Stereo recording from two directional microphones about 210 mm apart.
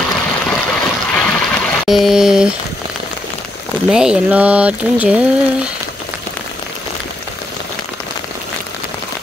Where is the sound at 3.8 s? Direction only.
5° right (ahead or behind).